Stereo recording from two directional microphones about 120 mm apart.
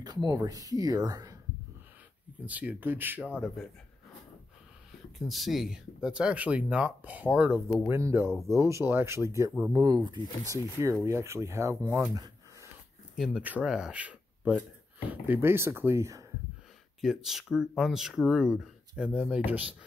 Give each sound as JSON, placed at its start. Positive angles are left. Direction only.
{"t": 0.0, "sound": "speech", "side_deg": -35}
{"t": 2.4, "sound": "speech", "side_deg": -10}
{"t": 5.3, "sound": "speech", "side_deg": 0}
{"t": 9.7, "sound": "speech", "side_deg": -35}
{"t": 10.4, "sound": "speech", "side_deg": -25}
{"t": 13.1, "sound": "speech", "side_deg": -5}
{"t": 17.0, "sound": "speech", "side_deg": 0}